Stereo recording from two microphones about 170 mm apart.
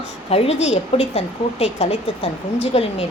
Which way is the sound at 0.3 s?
35° left (ahead or behind).